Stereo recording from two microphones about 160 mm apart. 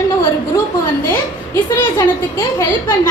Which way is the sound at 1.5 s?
15° left (ahead or behind).